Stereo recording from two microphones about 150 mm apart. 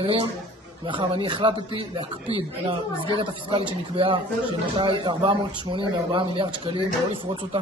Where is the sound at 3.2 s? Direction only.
35° right (ahead or behind).